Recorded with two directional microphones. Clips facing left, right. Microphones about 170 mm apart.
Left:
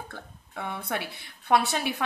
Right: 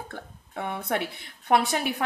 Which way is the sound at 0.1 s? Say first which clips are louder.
Right 3 dB; 20° right (ahead or behind).